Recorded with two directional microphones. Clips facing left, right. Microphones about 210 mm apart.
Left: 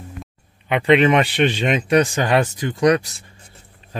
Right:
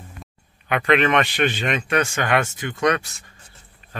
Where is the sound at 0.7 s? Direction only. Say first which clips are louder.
Left 4 dB; 25° left (ahead or behind).